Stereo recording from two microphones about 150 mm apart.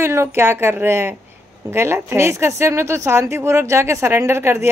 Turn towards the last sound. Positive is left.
turn(degrees=-15)  # may be behind; listen again after turning